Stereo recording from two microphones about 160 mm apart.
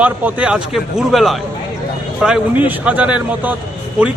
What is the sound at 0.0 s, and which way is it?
A man's voice, 10° right (ahead or behind).